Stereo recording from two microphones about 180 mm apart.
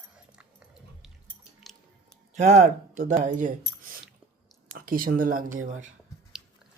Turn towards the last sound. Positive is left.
turn(degrees=-45)  # may be behind; listen again after turning